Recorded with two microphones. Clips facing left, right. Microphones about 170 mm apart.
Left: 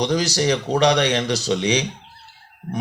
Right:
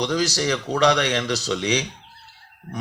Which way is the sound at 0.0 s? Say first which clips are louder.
Left 2 dB; 15° left (ahead or behind).